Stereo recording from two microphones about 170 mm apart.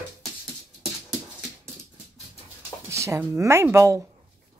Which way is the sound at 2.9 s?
15° right (ahead or behind).